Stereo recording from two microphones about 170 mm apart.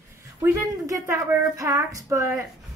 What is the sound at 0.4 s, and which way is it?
A woman's voice, 15° right (ahead or behind).